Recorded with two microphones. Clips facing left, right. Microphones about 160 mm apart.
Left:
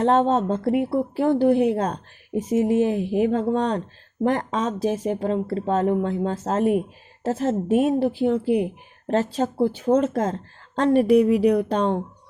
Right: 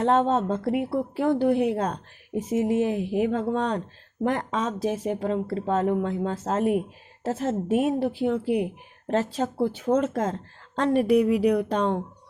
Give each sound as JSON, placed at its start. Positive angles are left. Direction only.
{"t": 0.0, "sound": "a woman's voice", "side_deg": 30}